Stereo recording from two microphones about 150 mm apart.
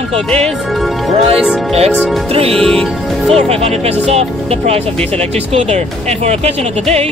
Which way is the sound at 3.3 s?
45° right (ahead or behind).